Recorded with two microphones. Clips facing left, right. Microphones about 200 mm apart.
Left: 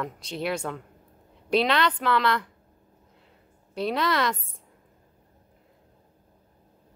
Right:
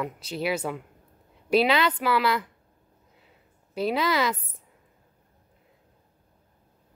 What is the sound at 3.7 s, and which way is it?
Speech, 5° right (ahead or behind).